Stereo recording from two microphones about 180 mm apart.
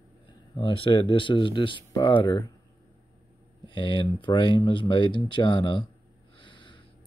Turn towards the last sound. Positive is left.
turn(degrees=25)  # may be behind; listen again after turning